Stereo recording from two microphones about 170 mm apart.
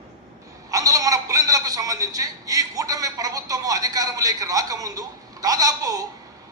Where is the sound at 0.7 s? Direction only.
20° right (ahead or behind).